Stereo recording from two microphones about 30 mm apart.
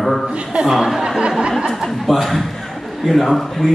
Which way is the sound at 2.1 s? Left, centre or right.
Centre.